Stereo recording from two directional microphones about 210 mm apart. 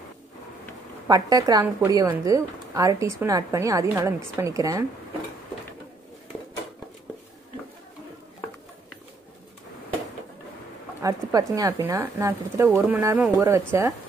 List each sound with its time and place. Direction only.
1.0 s a woman's voice: 20° right (ahead or behind)
11.0 s a woman's voice: 15° right (ahead or behind)